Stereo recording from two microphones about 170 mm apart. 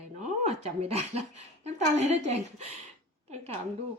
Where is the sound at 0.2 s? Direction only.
45° right (ahead or behind).